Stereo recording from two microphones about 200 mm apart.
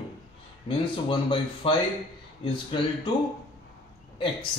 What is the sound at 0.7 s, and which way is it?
Speech, 25° left (ahead or behind).